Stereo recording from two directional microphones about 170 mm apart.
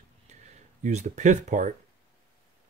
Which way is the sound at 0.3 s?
45° right (ahead or behind).